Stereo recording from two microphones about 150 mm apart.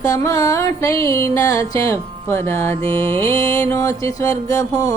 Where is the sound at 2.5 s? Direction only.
15° left (ahead or behind).